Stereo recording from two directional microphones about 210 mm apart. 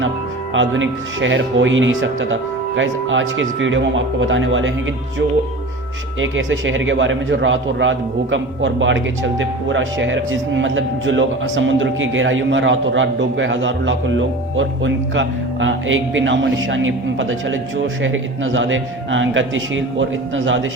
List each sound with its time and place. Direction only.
0.5 s a man's voice: 65° right (ahead or behind)
6.1 s a man's voice: 65° right (ahead or behind)